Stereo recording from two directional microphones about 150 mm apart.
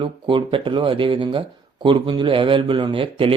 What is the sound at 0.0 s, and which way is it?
Speech, 35° right (ahead or behind).